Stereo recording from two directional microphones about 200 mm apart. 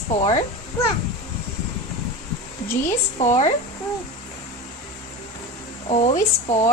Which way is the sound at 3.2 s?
35° left (ahead or behind).